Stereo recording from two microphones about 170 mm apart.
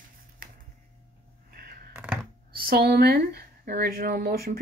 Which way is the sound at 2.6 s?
65° right (ahead or behind).